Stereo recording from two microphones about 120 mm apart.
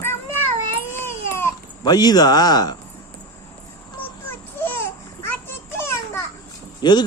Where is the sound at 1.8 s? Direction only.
35° left (ahead or behind).